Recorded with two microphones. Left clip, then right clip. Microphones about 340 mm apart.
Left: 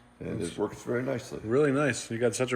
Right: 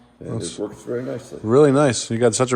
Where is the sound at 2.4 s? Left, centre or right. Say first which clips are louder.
Right 9 dB; right.